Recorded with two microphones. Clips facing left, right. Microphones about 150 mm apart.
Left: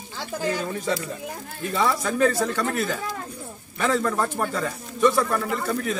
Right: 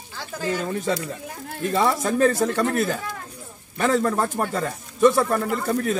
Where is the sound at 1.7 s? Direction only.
35° right (ahead or behind).